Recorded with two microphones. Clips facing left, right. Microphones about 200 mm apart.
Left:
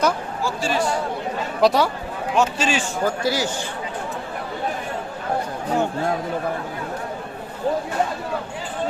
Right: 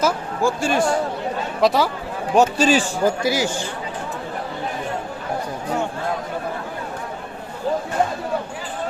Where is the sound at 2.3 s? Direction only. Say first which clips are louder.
Right 5 dB; 35° right (ahead or behind).